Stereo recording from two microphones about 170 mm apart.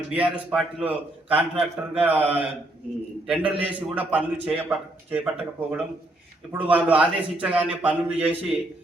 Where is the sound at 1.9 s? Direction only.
10° right (ahead or behind).